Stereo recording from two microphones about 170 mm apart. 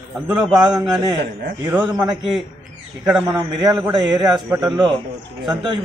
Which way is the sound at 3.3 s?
25° right (ahead or behind).